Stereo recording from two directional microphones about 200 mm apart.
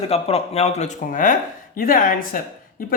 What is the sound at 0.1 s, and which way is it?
A woman's voice, 30° left (ahead or behind).